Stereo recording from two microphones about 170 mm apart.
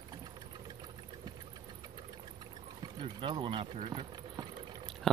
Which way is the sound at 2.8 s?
25° right (ahead or behind).